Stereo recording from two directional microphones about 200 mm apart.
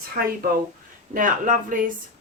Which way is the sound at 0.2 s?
45° right (ahead or behind).